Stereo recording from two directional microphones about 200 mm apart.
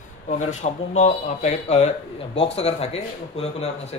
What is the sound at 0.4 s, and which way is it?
Speech, 35° left (ahead or behind).